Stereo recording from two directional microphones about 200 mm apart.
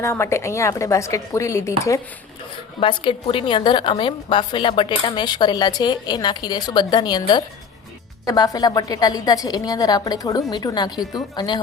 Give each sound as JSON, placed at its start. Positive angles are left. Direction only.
{"t": 0.0, "sound": "a woman's voice", "side_deg": 15}